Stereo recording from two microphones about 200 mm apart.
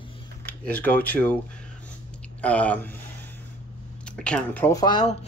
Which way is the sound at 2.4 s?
5° left (ahead or behind).